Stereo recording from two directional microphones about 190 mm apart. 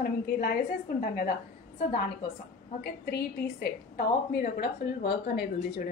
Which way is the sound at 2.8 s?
55° left (ahead or behind).